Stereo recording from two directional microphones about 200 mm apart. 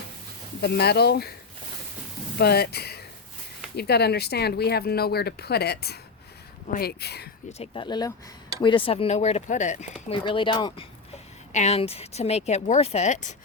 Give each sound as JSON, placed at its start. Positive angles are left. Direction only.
{"t": 0.6, "sound": "speech", "side_deg": 55}
{"t": 2.4, "sound": "speech", "side_deg": 55}
{"t": 7.6, "sound": "speech", "side_deg": 25}
{"t": 10.2, "sound": "speech", "side_deg": 25}
{"t": 11.5, "sound": "speech", "side_deg": 35}